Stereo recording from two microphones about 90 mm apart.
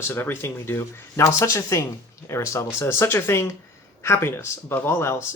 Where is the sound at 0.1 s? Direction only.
25° left (ahead or behind).